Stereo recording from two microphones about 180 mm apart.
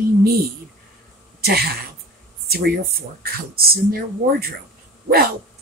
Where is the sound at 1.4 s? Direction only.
60° right (ahead or behind).